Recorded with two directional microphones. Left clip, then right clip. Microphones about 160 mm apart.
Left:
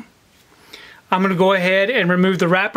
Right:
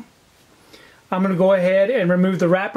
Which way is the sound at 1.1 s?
25° left (ahead or behind).